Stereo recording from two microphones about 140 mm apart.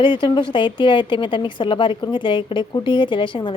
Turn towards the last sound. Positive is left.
turn(degrees=35)  # may be behind; listen again after turning